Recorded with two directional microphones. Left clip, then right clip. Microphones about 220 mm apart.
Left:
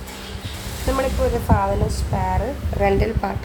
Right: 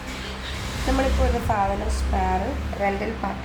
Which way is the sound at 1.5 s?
45° left (ahead or behind).